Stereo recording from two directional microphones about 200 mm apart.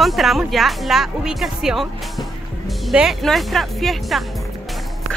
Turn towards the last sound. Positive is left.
turn(degrees=0)  # may be behind; listen again after turning